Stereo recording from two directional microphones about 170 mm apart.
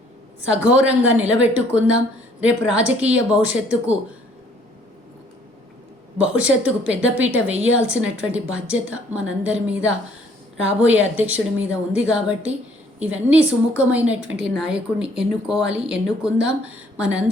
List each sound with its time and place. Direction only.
0.4 s a woman's voice: 5° right (ahead or behind)
6.1 s a woman's voice: 5° right (ahead or behind)